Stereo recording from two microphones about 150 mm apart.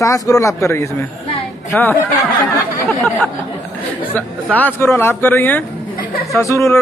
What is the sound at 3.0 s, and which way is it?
Speech, 15° left (ahead or behind).